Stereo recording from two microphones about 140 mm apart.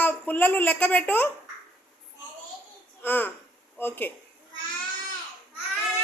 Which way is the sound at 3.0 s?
15° left (ahead or behind).